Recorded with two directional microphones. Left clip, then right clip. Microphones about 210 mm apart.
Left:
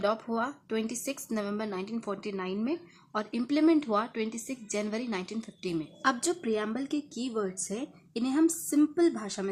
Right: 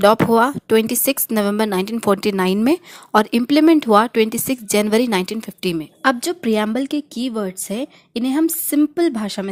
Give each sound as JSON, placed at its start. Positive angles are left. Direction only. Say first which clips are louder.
{"t": 0.0, "sound": "speech", "louder": "right 17 dB", "side_deg": -45}